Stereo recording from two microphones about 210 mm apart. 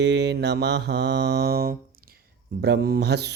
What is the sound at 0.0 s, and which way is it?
Mantra, 55° right (ahead or behind).